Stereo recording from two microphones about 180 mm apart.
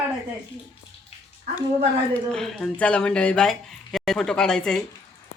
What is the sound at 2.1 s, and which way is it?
Speech, 5° left (ahead or behind).